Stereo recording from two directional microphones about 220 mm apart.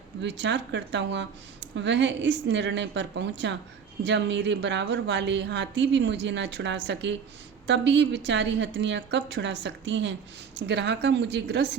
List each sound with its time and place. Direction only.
0.2 s a woman's voice: 55° right (ahead or behind)